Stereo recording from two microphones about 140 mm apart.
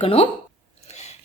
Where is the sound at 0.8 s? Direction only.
55° left (ahead or behind).